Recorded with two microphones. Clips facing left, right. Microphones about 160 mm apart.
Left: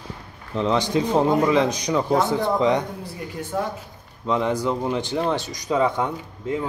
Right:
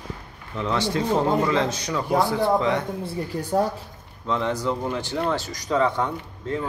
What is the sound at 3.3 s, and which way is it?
Speech, 40° right (ahead or behind).